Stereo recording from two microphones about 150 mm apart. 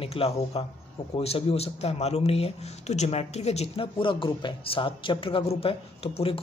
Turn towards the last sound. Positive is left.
turn(degrees=40)  # may be behind; listen again after turning